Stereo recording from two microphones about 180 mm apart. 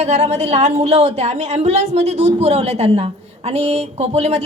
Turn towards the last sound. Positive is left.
turn(degrees=-35)  # may be behind; listen again after turning